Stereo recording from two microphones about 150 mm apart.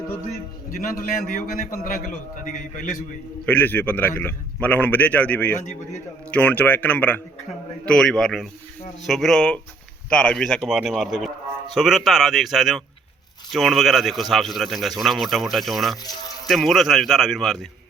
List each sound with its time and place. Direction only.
1.1 s a man's voice: 65° left (ahead or behind)
3.4 s a man's voice: 10° left (ahead or behind)